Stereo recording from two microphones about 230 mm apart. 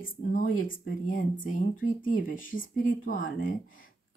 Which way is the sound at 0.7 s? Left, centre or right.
Left.